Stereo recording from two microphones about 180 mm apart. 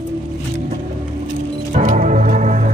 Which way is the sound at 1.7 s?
45° right (ahead or behind).